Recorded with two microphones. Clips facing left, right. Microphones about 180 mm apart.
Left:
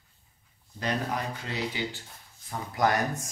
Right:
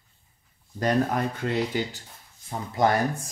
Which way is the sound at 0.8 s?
50° right (ahead or behind).